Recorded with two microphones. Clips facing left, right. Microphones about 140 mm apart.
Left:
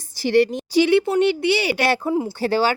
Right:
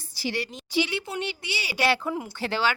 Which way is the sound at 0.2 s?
50° left (ahead or behind).